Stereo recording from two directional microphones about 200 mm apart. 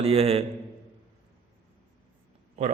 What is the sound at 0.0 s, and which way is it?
Speech, 30° right (ahead or behind).